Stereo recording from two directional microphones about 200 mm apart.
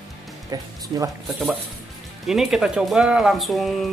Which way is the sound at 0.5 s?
20° right (ahead or behind).